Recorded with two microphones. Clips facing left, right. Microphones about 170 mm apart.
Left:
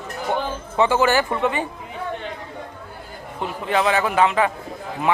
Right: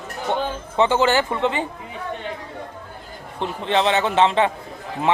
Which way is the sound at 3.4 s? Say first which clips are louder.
Right 1 dB; 25° right (ahead or behind).